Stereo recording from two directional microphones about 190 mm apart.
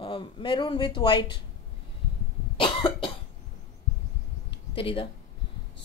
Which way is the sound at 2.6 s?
25° left (ahead or behind).